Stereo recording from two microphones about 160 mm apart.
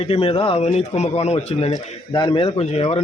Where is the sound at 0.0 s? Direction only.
35° left (ahead or behind).